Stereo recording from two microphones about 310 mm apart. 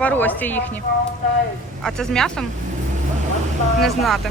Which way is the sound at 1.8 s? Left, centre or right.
Centre.